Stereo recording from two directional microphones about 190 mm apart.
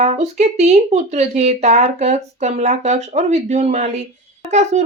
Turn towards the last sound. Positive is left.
turn(degrees=-35)  # may be behind; listen again after turning